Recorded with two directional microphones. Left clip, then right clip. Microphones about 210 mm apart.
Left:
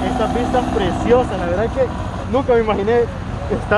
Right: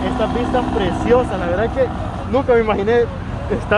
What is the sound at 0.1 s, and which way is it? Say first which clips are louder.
Speech: left 1 dB; 50° left (ahead or behind).